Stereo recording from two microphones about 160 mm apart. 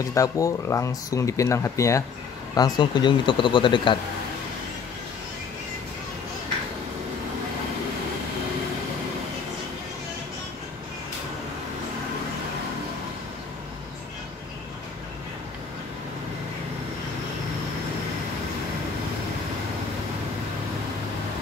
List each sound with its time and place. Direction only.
0.0 s speech: 20° left (ahead or behind)